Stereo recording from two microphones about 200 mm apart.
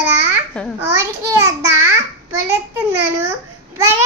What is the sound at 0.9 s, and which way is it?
A child's voice, 15° right (ahead or behind).